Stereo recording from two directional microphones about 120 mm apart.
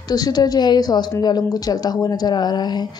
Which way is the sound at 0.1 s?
35° left (ahead or behind).